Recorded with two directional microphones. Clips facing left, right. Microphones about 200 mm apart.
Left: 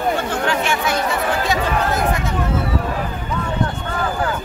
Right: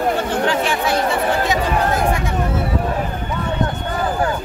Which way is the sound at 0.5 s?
35° right (ahead or behind).